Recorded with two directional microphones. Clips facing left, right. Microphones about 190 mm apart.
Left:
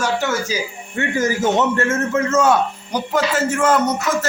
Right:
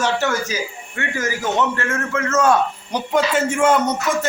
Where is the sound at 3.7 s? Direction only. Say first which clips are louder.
Left 1 dB; 5° left (ahead or behind).